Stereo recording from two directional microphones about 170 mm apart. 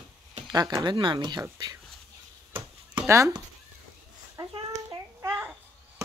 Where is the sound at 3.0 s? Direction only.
15° right (ahead or behind).